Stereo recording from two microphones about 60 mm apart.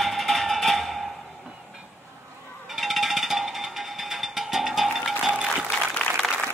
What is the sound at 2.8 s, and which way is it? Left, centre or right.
Music, centre.